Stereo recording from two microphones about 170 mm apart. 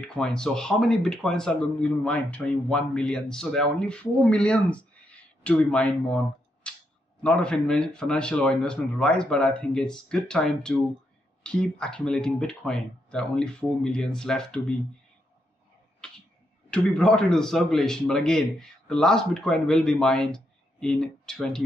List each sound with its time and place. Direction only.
0.0 s speech: 5° left (ahead or behind)
16.0 s tick-tock: 5° left (ahead or behind)
16.7 s speech: 5° left (ahead or behind)